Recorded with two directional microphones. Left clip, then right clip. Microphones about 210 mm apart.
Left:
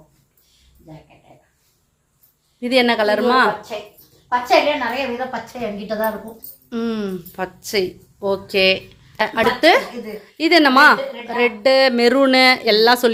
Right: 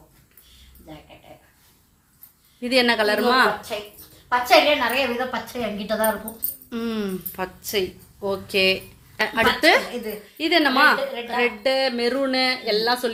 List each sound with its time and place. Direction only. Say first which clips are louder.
2.6 s speech: left 3 dB; 15° left (ahead or behind)
4.3 s a woman's voice: left 1 dB; 20° right (ahead or behind)
6.7 s speech: left 4 dB; 10° left (ahead or behind)
10.3 s a woman's voice: left 6 dB; 30° left (ahead or behind)
11.7 s speech: left 8 dB; 30° left (ahead or behind)